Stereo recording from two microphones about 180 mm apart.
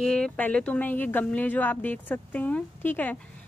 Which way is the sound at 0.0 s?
5° left (ahead or behind).